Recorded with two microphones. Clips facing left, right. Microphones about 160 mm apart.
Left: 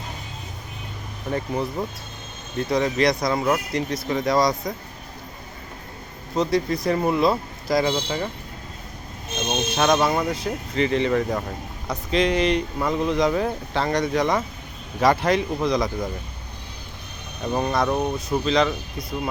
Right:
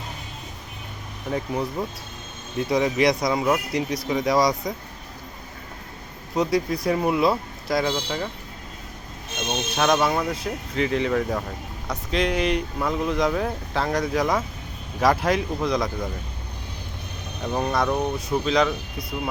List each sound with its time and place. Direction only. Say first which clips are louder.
1.3 s speech: left 1 dB; 5° right (ahead or behind)
3.7 s speech: even; 15° right (ahead or behind)
4.1 s speech: even; centre (ahead or behind)
6.3 s speech: left 1 dB; 10° right (ahead or behind)
9.5 s speech: left 1 dB; centre (ahead or behind)
17.4 s speech: left 1 dB; centre (ahead or behind)